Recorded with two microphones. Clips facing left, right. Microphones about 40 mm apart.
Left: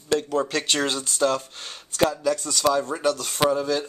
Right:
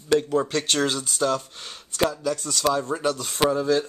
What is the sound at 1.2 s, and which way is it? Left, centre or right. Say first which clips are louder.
Speech: left 2 dB; centre.